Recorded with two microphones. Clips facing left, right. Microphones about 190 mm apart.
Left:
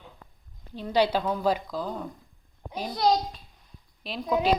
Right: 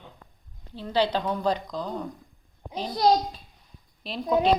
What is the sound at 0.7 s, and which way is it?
Speech, 10° left (ahead or behind).